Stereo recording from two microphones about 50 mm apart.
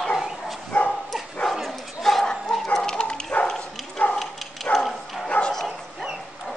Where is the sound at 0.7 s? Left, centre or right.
Left.